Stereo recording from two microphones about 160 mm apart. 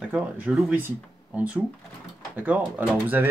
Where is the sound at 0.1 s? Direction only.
5° right (ahead or behind).